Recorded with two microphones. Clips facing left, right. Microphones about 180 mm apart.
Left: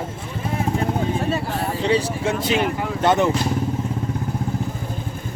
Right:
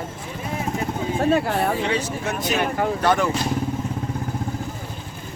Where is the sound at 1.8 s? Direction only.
35° left (ahead or behind).